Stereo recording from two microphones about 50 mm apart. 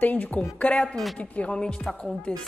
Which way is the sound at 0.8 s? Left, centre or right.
Centre.